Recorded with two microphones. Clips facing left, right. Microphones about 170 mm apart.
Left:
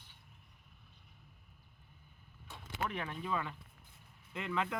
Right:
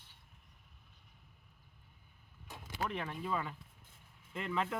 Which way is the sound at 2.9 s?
Centre (ahead or behind).